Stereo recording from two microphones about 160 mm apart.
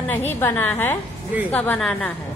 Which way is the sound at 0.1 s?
15° left (ahead or behind).